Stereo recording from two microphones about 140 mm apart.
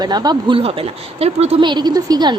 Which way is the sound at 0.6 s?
45° right (ahead or behind).